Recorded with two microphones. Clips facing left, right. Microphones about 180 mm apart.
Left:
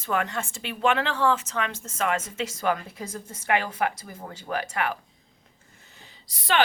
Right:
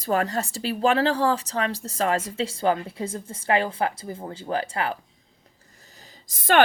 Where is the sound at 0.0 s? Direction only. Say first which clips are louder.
Right 4 dB; 35° right (ahead or behind).